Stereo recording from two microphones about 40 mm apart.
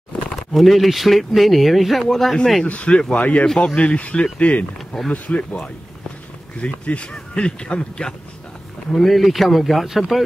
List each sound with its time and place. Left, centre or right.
0.5 s speech: centre
2.6 s speech: left
4.7 s speech: centre
5.1 s speech: left
8.9 s speech: centre